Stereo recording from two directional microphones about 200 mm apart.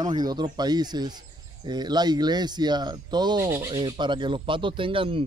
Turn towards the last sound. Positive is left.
turn(degrees=-25)  # may be behind; listen again after turning